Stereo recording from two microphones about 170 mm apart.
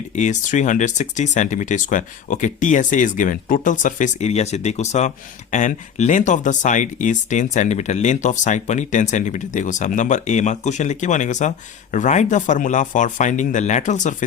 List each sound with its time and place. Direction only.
0.2 s speech: 45° left (ahead or behind)